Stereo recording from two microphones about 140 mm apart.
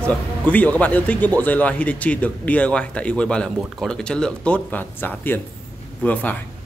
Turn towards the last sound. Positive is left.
turn(degrees=10)  # may be behind; listen again after turning